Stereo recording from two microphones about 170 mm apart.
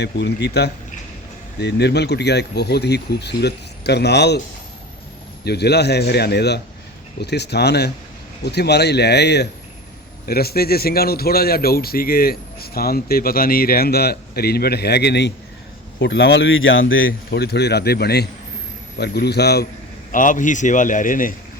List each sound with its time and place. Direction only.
0.0 s speech: 80° left
5.5 s speech: 75° left (ahead or behind)
10.2 s speech: 65° left (ahead or behind)
16.0 s a man's voice: 90° left
17.1 s speech: 70° left (ahead or behind)
20.1 s a man's voice: 50° left (ahead or behind)